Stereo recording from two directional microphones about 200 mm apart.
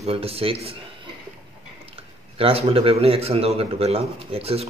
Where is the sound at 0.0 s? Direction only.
30° right (ahead or behind).